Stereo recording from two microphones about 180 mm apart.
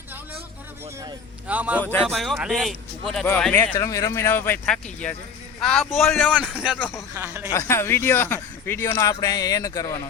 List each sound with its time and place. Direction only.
1.5 s speech: 10° right (ahead or behind)
1.8 s a man's voice: 5° left (ahead or behind)
6.7 s a man's voice: 10° left (ahead or behind)
7.1 s speech: 10° right (ahead or behind)
7.5 s a man's voice: 15° left (ahead or behind)